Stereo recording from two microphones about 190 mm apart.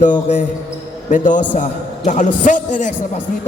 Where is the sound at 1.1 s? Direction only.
45° left (ahead or behind).